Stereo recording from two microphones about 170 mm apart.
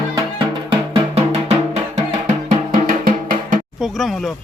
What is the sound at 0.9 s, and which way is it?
Music, 35° right (ahead or behind).